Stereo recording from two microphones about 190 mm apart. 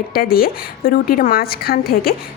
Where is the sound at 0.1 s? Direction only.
50° left (ahead or behind).